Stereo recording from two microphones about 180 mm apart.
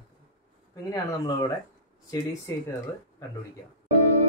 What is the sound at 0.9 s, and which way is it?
Speech, 20° left (ahead or behind).